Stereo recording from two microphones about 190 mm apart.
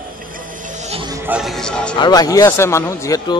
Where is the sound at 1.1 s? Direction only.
10° right (ahead or behind).